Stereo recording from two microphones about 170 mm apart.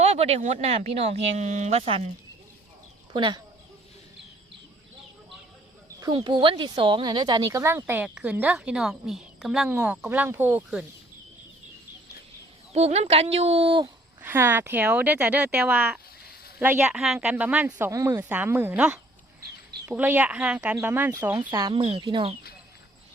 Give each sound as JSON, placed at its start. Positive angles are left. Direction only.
{"t": 0.0, "sound": "speech", "side_deg": -40}
{"t": 3.1, "sound": "speech", "side_deg": -25}
{"t": 6.0, "sound": "speech", "side_deg": -25}
{"t": 12.7, "sound": "speech", "side_deg": -40}
{"t": 14.2, "sound": "speech", "side_deg": -10}